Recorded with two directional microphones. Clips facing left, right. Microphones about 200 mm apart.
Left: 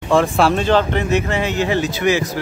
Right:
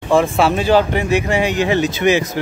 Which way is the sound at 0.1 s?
Centre (ahead or behind).